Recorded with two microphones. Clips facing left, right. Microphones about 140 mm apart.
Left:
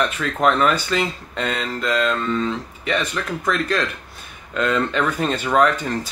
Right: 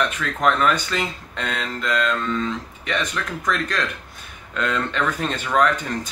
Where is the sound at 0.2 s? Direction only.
5° left (ahead or behind).